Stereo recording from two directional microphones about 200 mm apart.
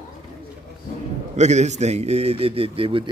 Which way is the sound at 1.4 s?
35° right (ahead or behind).